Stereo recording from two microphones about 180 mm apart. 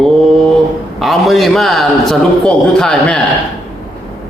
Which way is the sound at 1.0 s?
Centre (ahead or behind).